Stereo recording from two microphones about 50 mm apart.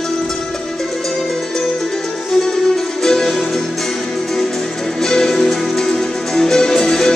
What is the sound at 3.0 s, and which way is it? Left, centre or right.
Music, centre.